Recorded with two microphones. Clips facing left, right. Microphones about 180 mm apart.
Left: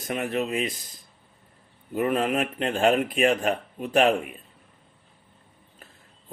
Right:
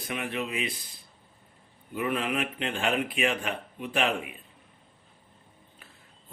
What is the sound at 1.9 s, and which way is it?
Speech, 45° left (ahead or behind).